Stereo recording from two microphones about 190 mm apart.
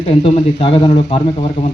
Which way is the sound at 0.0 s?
35° left (ahead or behind).